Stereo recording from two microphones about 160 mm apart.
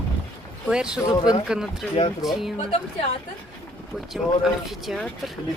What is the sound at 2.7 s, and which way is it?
Speech, 40° left (ahead or behind).